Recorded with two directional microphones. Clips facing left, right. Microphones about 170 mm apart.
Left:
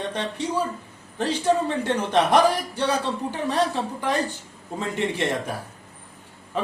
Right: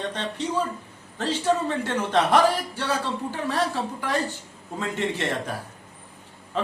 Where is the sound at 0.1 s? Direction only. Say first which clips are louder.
Left 1 dB; 10° left (ahead or behind).